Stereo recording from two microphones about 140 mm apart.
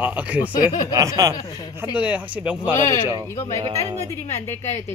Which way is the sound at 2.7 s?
20° left (ahead or behind).